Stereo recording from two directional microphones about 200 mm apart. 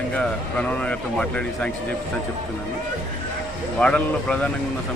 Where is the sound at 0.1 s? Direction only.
5° left (ahead or behind).